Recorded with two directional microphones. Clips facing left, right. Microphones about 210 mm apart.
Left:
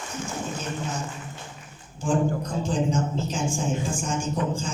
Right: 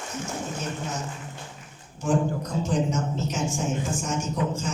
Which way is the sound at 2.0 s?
30° left (ahead or behind).